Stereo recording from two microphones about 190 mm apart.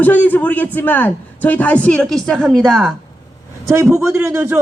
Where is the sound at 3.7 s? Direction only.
15° right (ahead or behind).